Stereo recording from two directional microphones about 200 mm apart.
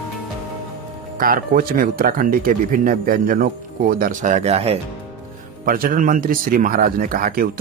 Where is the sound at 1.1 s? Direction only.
45° right (ahead or behind).